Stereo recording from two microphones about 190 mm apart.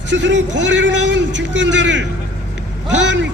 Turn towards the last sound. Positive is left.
turn(degrees=-75)  # may be behind; listen again after turning